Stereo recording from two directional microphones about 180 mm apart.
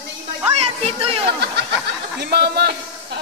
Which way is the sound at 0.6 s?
30° right (ahead or behind).